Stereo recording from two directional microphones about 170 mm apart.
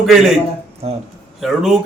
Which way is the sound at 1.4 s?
Centre (ahead or behind).